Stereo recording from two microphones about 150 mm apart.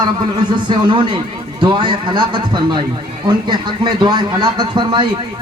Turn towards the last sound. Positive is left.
turn(degrees=-30)  # may be behind; listen again after turning